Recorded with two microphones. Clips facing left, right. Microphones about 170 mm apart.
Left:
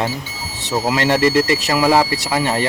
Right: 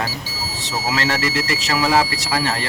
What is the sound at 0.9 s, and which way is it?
A man's voice, 20° left (ahead or behind).